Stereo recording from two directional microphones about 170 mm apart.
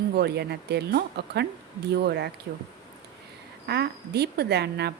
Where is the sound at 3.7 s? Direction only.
75° right (ahead or behind).